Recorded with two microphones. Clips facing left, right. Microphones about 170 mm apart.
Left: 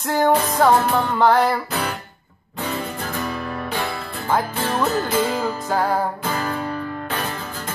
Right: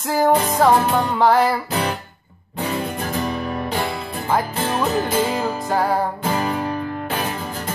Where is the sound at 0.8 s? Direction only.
15° right (ahead or behind).